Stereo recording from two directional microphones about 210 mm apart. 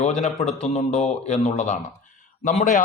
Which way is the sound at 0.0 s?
35° left (ahead or behind).